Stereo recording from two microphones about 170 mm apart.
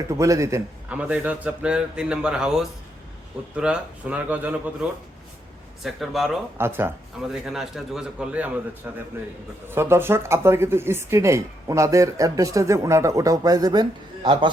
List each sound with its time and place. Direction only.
0.2 s a man's voice: 20° right (ahead or behind); by 6.4 s centre (ahead or behind)
6.6 s speech: 15° right (ahead or behind)
7.3 s a man's voice: centre (ahead or behind); by 14.5 s 30° right (ahead or behind)